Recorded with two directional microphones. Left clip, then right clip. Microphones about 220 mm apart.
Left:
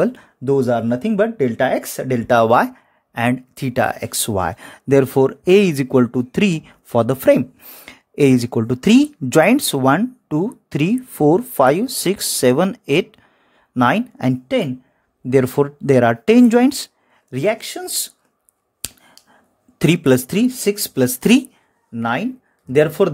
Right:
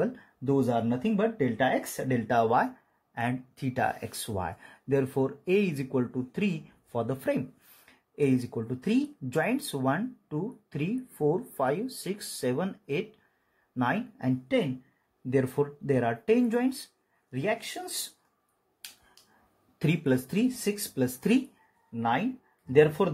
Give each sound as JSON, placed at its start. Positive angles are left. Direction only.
{"t": 0.0, "sound": "speech", "side_deg": 50}
{"t": 19.8, "sound": "speech", "side_deg": 50}